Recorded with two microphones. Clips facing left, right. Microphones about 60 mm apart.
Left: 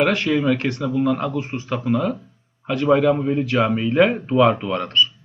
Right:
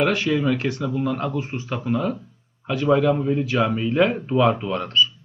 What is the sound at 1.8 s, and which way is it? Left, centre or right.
A man's voice, left.